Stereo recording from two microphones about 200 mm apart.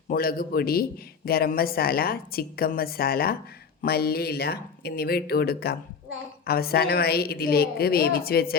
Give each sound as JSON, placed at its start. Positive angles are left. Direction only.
{"t": 0.1, "sound": "a man's voice", "side_deg": 50}